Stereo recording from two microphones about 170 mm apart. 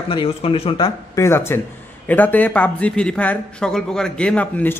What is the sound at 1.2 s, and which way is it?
Speech, 15° left (ahead or behind).